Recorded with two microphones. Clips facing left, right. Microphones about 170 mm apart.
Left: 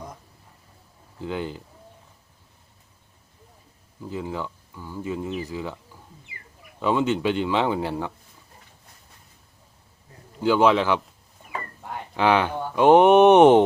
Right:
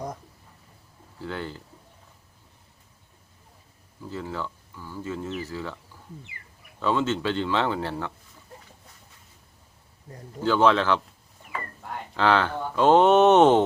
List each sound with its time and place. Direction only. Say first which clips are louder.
1.2 s speech: left 4 dB; 15° left (ahead or behind)
4.0 s speech: left 2 dB; 15° left (ahead or behind)
10.4 s speech: left 2 dB; 15° left (ahead or behind)
12.1 s speech: left 2 dB; 15° left (ahead or behind)